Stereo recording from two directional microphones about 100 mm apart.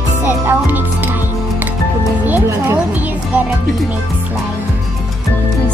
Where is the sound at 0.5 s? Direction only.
20° right (ahead or behind).